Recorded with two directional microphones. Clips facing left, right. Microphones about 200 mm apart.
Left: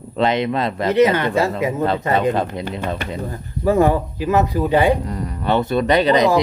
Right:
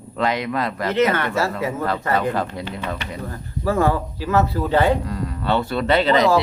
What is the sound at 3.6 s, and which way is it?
Speech, 20° left (ahead or behind).